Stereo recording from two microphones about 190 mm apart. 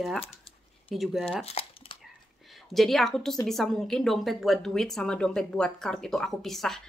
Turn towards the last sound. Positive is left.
turn(degrees=0)  # may be behind; listen again after turning